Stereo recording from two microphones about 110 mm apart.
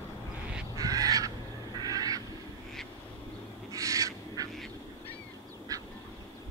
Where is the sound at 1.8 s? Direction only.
35° right (ahead or behind).